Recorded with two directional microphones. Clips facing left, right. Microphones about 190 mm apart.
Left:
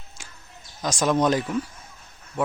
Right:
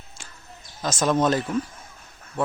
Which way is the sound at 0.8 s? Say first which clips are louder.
Even; 15° left (ahead or behind).